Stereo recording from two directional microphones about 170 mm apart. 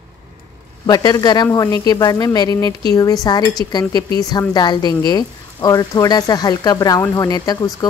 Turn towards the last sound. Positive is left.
turn(degrees=25)  # may be behind; listen again after turning